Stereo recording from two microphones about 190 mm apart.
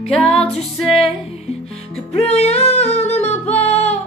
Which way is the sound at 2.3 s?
35° left (ahead or behind).